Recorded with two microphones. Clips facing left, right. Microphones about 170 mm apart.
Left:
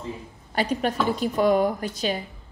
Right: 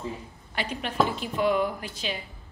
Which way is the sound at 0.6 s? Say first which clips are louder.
Left 3 dB; 40° left (ahead or behind).